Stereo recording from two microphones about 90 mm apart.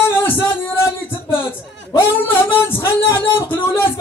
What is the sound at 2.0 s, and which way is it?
Speech, 25° left (ahead or behind).